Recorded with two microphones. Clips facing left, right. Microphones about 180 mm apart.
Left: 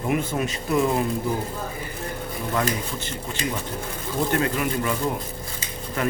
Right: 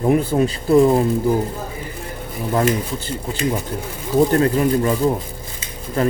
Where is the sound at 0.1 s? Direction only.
35° right (ahead or behind).